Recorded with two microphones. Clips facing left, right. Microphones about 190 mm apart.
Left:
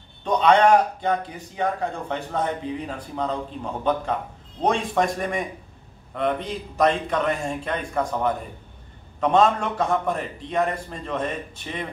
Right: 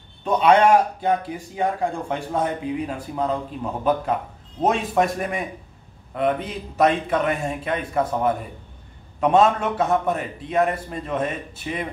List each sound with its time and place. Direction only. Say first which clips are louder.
0.2 s a man's voice: right 1 dB; 5° right (ahead or behind)